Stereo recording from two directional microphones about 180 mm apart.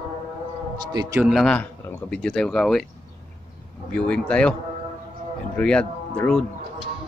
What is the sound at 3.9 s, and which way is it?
Speech, 5° left (ahead or behind).